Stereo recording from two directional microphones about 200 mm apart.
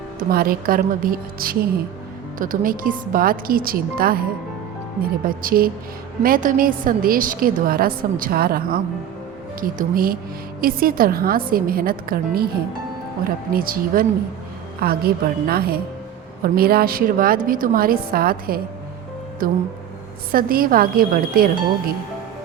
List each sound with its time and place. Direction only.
0.2 s a woman's voice: 45° right (ahead or behind)
5.2 s a woman's voice: 45° right (ahead or behind)